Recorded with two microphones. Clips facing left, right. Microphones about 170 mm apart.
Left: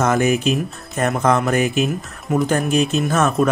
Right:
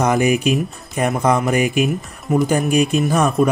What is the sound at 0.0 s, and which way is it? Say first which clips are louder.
Speech: right 1 dB; 15° right (ahead or behind).